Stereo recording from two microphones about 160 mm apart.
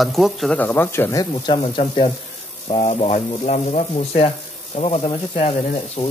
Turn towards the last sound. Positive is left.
turn(degrees=40)  # may be behind; listen again after turning